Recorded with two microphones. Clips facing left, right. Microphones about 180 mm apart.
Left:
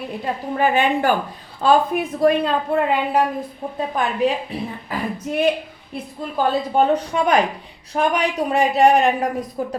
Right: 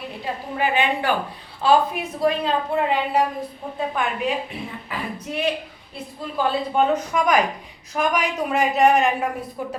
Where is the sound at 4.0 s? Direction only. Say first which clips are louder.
Left 6 dB; 35° left (ahead or behind).